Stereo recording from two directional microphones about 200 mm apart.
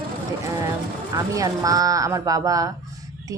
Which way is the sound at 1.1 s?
15° right (ahead or behind).